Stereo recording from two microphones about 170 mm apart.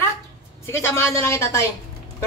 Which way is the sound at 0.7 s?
15° left (ahead or behind).